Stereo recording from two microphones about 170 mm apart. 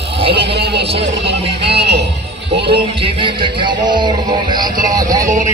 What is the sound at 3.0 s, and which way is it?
Music, 30° right (ahead or behind).